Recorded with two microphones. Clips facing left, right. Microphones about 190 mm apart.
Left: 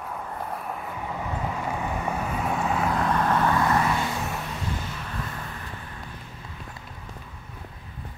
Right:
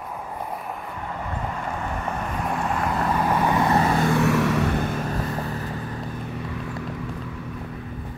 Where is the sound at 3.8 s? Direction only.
45° right (ahead or behind).